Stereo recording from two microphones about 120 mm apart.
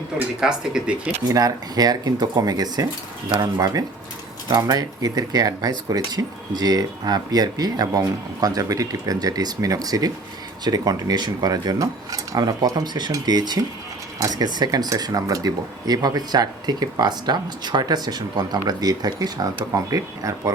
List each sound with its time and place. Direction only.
0.2 s speech: 5° right (ahead or behind)
1.3 s speech: 30° right (ahead or behind)